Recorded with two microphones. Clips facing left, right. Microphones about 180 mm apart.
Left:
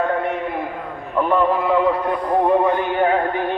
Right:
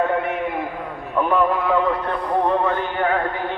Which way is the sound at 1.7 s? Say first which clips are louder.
Left 2 dB; 10° left (ahead or behind).